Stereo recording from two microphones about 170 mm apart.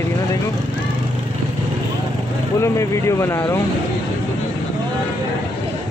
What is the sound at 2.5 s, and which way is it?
Speech, 15° left (ahead or behind).